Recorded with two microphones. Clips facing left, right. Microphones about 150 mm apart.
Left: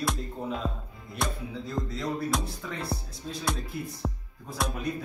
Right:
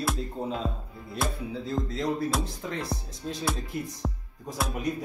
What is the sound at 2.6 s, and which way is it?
Speech, 20° right (ahead or behind).